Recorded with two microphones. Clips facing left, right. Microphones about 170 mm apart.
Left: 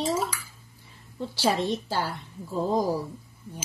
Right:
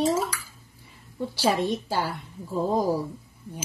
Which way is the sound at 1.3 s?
10° right (ahead or behind).